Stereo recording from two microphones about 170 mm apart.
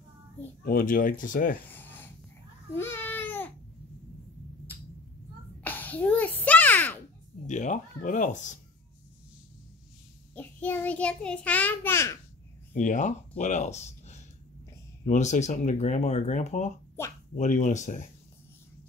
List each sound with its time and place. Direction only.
0.7 s speech: 55° left (ahead or behind)
1.7 s a sound: 10° left (ahead or behind)
2.7 s babbling: 10° left (ahead or behind)
5.6 s a sound: 10° left (ahead or behind)
7.4 s speech: 45° left (ahead or behind)
10.3 s a child's voice: 10° left (ahead or behind)
12.7 s speech: 45° left (ahead or behind)